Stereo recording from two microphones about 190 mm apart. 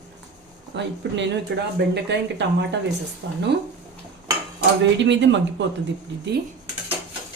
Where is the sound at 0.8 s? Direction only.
70° right (ahead or behind).